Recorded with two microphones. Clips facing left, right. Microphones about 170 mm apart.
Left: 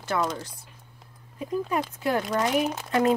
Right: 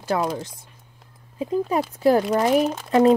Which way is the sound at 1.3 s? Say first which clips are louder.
Right 5 dB; 30° right (ahead or behind).